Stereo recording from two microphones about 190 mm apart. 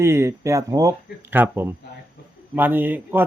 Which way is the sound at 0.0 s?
15° right (ahead or behind).